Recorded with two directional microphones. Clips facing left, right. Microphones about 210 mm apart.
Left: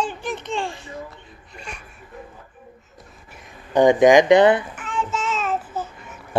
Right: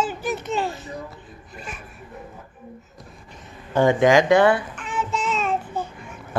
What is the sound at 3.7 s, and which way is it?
Speech, 15° left (ahead or behind).